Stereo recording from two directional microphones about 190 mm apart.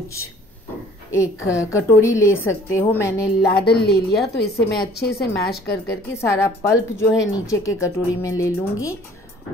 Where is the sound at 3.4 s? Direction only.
60° left (ahead or behind).